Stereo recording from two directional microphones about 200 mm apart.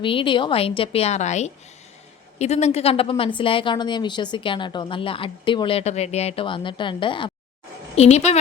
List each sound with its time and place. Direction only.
0.0 s a woman's voice: 25° left (ahead or behind)